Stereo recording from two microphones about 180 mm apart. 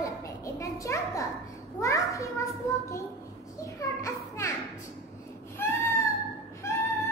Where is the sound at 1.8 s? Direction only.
15° left (ahead or behind).